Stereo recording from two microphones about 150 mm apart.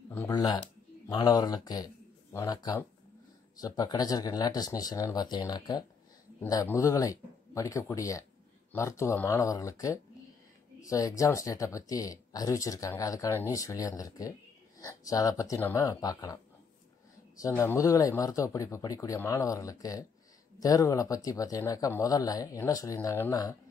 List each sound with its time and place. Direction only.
0.3 s speech: 25° left (ahead or behind)
17.4 s speech: 20° left (ahead or behind)